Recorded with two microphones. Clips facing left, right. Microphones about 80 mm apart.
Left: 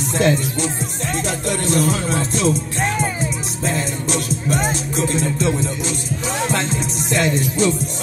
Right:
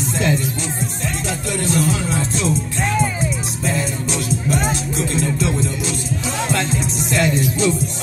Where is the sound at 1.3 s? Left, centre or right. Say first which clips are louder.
Even; left.